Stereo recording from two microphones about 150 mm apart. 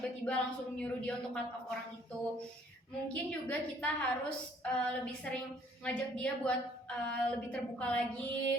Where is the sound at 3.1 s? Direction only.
10° left (ahead or behind).